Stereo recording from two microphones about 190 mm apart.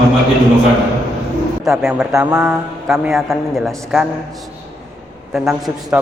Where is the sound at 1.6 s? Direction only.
Centre (ahead or behind).